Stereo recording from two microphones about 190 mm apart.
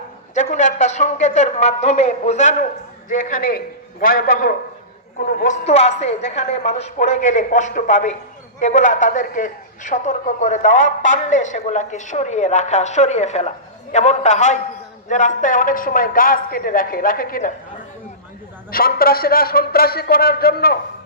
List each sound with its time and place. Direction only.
0.3 s a man's voice: 40° left (ahead or behind)
18.7 s a woman's voice: 50° left (ahead or behind)